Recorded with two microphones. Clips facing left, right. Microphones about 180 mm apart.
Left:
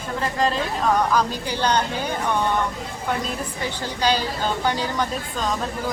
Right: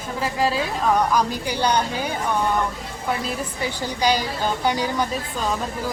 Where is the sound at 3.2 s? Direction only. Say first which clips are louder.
Right 1 dB; 10° right (ahead or behind).